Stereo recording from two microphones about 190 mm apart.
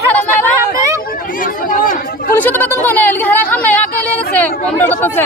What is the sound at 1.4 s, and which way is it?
Chatter, 45° left (ahead or behind).